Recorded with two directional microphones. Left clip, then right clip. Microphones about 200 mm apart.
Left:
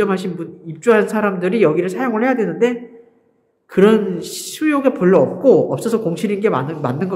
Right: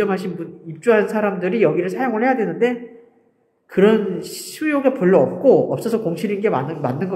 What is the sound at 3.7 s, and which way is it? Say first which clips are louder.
Speech: left 2 dB; 20° left (ahead or behind).